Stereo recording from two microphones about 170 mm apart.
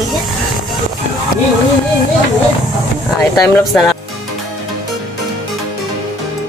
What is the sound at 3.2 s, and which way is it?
Speech, 15° left (ahead or behind).